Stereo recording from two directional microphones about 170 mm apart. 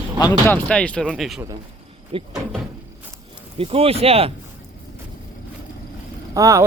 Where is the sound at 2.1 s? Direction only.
30° right (ahead or behind).